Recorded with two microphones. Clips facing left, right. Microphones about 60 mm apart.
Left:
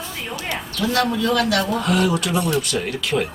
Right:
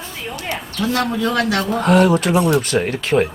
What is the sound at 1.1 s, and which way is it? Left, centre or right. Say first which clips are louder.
Speech: right 1 dB; right.